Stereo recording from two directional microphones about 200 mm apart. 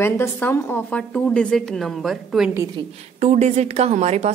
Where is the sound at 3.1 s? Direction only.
35° right (ahead or behind).